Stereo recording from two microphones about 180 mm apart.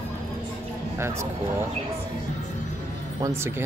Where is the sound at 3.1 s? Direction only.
20° right (ahead or behind).